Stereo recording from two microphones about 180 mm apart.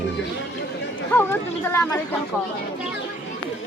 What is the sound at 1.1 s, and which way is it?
Speech, 10° left (ahead or behind).